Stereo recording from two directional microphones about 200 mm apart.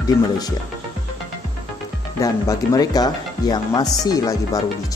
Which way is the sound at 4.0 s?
20° left (ahead or behind).